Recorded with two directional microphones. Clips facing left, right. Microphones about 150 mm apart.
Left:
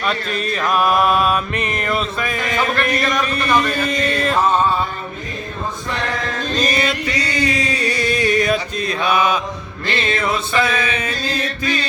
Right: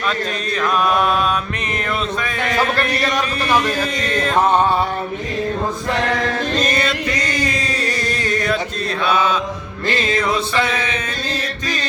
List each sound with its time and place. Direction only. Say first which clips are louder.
0.5 s mantra: left 1 dB; 5° left (ahead or behind)
4.1 s music: left 1 dB; 5° left (ahead or behind)
4.4 s a sound: right 2 dB; 65° right (ahead or behind)
6.6 s music: even; 5° left (ahead or behind)
9.0 s mantra: even; 10° left (ahead or behind)
9.8 s music: right 1 dB; 45° right (ahead or behind)
10.2 s music: right 1 dB; 5° left (ahead or behind)